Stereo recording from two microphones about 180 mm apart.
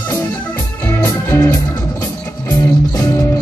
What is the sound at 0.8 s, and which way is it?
Music, 15° left (ahead or behind).